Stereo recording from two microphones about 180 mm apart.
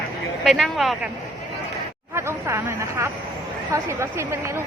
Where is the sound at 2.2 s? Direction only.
15° right (ahead or behind).